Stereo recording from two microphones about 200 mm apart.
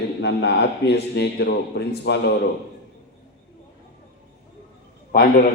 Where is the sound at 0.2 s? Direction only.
60° left (ahead or behind).